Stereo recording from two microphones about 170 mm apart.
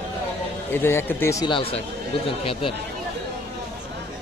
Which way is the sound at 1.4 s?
30° left (ahead or behind).